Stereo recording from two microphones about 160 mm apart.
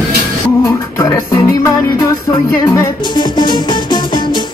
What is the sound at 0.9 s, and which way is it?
Music, 20° left (ahead or behind).